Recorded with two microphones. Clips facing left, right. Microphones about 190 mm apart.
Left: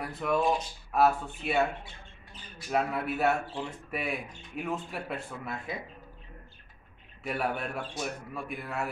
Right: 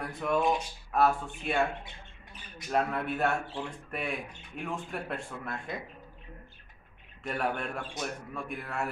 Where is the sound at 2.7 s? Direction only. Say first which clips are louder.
Even; 5° left (ahead or behind).